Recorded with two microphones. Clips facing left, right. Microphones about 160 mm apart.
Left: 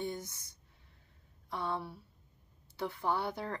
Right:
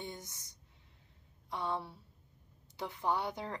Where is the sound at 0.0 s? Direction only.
20° right (ahead or behind).